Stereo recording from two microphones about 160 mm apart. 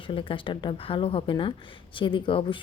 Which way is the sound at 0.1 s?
35° left (ahead or behind).